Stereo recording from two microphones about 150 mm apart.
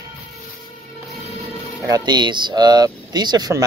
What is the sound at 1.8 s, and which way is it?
Speech, 25° right (ahead or behind).